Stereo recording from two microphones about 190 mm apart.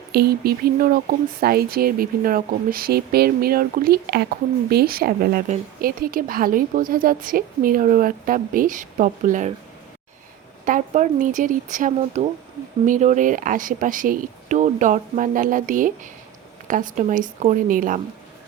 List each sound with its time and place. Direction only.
0.1 s speech: 55° right (ahead or behind)
10.7 s speech: 40° right (ahead or behind)